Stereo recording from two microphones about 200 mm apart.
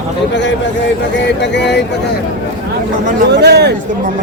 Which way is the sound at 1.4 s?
60° left (ahead or behind).